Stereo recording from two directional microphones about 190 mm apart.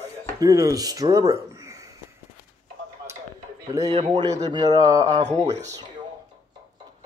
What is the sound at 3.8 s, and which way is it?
Speech, 20° right (ahead or behind).